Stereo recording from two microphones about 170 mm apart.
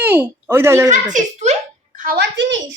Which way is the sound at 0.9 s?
45° right (ahead or behind).